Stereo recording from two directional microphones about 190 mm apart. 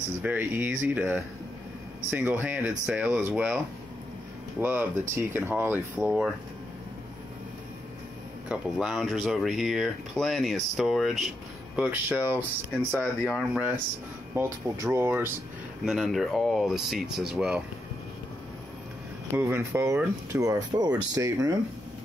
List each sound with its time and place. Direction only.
0.2 s speech: 10° right (ahead or behind)
8.5 s speech: centre (ahead or behind)
12.9 s speech: 5° left (ahead or behind)
14.3 s speech: 10° right (ahead or behind)
19.3 s speech: 15° right (ahead or behind)